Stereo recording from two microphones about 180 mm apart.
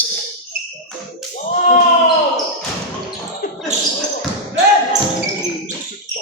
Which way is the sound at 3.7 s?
40° right (ahead or behind).